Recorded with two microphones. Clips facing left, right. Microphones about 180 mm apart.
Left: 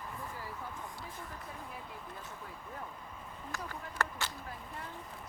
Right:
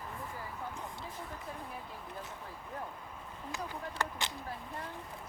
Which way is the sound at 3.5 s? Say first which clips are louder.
Right 3 dB; 15° right (ahead or behind).